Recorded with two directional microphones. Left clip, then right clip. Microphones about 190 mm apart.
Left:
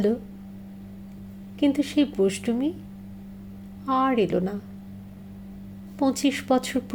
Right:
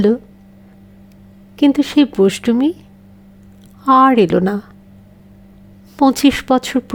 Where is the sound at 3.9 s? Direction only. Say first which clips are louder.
Right 12 dB; 55° right (ahead or behind).